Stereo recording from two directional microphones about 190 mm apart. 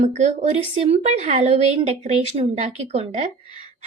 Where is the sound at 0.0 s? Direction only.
35° right (ahead or behind).